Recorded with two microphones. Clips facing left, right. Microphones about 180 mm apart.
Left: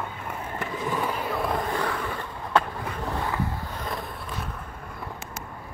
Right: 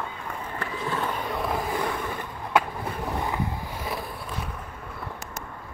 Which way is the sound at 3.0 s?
15° right (ahead or behind).